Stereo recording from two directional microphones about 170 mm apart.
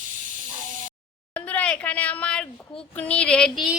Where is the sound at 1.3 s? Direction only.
10° left (ahead or behind).